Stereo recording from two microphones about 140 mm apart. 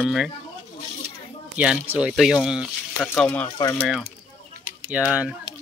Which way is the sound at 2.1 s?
Centre (ahead or behind).